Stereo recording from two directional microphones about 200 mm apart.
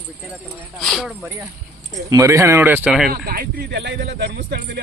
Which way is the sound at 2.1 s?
15° right (ahead or behind).